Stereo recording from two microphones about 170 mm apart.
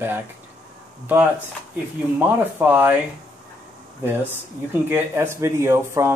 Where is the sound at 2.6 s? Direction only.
10° right (ahead or behind).